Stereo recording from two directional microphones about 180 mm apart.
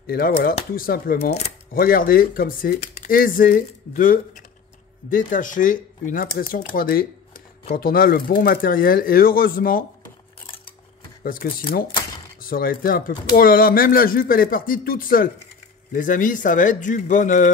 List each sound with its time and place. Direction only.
0.0 s speech: 55° left (ahead or behind)
11.2 s speech: 55° left (ahead or behind)